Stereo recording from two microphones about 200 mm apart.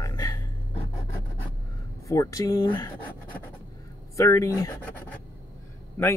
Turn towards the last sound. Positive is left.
turn(degrees=15)  # may be behind; listen again after turning